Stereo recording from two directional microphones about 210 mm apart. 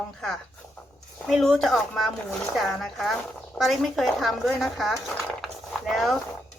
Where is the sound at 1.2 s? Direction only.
Centre (ahead or behind).